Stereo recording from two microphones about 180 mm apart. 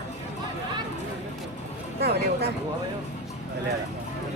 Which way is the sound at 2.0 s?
60° right (ahead or behind).